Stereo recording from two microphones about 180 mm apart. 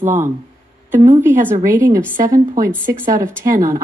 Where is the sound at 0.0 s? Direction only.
10° right (ahead or behind).